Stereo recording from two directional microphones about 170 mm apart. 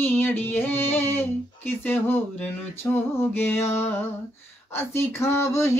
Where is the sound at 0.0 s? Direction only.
10° left (ahead or behind).